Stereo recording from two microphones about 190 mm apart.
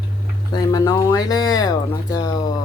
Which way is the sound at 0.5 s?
20° left (ahead or behind).